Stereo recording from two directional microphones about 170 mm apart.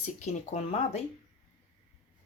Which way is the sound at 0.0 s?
45° left (ahead or behind).